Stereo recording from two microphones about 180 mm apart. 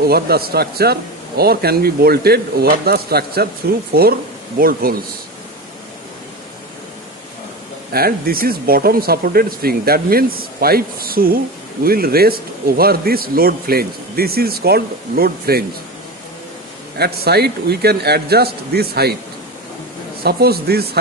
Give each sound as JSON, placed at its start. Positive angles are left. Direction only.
{"t": 0.0, "sound": "speech", "side_deg": -60}
{"t": 7.9, "sound": "speech", "side_deg": -55}
{"t": 17.0, "sound": "speech", "side_deg": -65}
{"t": 20.2, "sound": "speech", "side_deg": -60}